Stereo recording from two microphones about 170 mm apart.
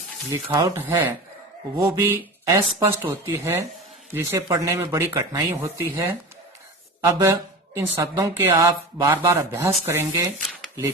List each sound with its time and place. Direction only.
0.3 s speech: 20° right (ahead or behind)
7.0 s speech: 15° right (ahead or behind)